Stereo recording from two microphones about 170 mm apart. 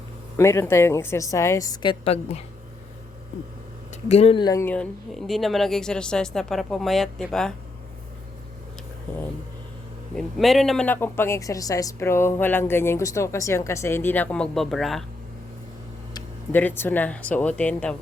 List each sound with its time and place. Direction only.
0.3 s a woman's voice: 15° left (ahead or behind)
4.1 s speech: 35° left (ahead or behind); by 7.5 s 5° left (ahead or behind)
10.2 s a woman's voice: centre (ahead or behind)
16.5 s a woman's voice: 10° left (ahead or behind)